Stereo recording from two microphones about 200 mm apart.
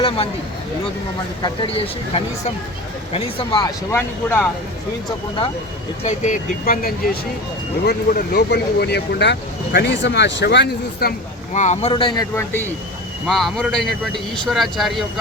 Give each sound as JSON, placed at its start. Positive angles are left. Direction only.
{"t": 1.4, "sound": "speech", "side_deg": 25}
{"t": 3.9, "sound": "speech", "side_deg": 10}
{"t": 6.0, "sound": "speech", "side_deg": 35}
{"t": 11.5, "sound": "speech", "side_deg": 35}
{"t": 12.4, "sound": "speech", "side_deg": 10}